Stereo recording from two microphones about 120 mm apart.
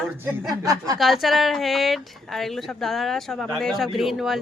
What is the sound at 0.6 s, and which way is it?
Speech, 30° right (ahead or behind).